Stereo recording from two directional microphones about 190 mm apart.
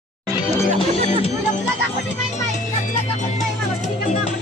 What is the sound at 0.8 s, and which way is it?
Speech, 35° left (ahead or behind).